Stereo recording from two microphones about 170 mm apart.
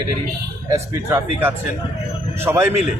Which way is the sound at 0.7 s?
15° right (ahead or behind).